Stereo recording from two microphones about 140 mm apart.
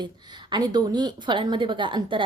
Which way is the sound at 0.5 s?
30° right (ahead or behind).